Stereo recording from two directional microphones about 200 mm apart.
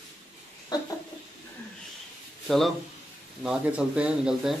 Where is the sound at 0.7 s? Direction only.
20° left (ahead or behind).